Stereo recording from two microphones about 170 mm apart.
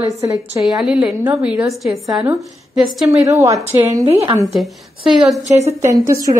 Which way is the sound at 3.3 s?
20° right (ahead or behind).